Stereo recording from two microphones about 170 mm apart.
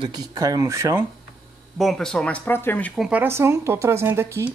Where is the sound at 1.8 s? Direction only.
Centre (ahead or behind).